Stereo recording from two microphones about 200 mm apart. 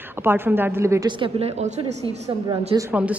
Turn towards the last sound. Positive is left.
turn(degrees=-10)  # may be behind; listen again after turning